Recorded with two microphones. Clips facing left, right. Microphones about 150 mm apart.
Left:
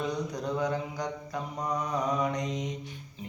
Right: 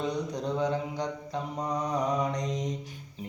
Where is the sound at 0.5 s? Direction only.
20° right (ahead or behind).